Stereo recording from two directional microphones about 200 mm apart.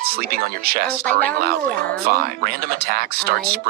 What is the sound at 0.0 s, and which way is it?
Speech, 50° right (ahead or behind).